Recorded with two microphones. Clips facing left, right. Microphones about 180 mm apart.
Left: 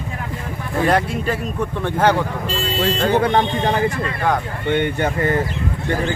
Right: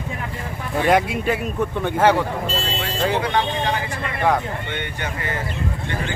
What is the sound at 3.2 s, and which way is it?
Speech, 45° left (ahead or behind).